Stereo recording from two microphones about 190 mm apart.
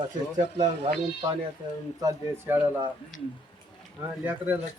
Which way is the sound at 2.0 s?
20° right (ahead or behind).